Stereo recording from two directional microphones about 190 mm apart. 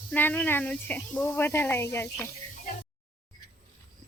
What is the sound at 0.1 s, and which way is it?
Speech, 10° left (ahead or behind).